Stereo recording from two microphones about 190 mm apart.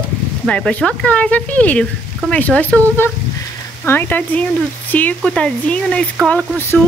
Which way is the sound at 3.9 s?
10° left (ahead or behind).